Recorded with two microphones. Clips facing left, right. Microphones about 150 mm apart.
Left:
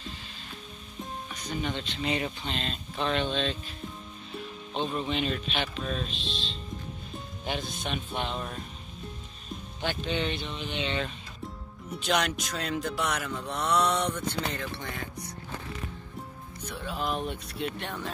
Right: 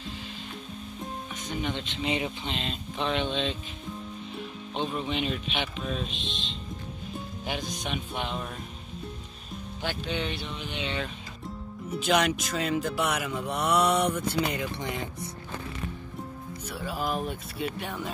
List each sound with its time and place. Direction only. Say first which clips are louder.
1.3 s speech: even; 20° right (ahead or behind)
4.7 s speech: even; 10° right (ahead or behind)
7.4 s speech: left 1 dB; 15° right (ahead or behind)
9.8 s speech: left 1 dB; 10° right (ahead or behind)
16.6 s speech: right 1 dB; 5° right (ahead or behind)